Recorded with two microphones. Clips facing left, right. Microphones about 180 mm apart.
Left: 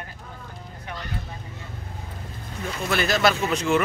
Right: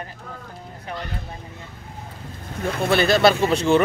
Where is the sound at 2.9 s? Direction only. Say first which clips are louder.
Right 5 dB; 30° right (ahead or behind).